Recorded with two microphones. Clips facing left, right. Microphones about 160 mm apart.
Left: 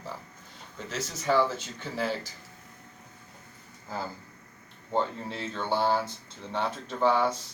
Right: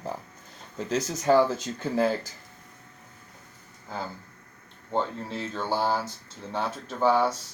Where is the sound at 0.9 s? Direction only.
45° right (ahead or behind).